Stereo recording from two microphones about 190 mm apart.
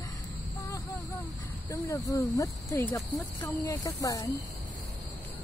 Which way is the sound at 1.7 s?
15° left (ahead or behind).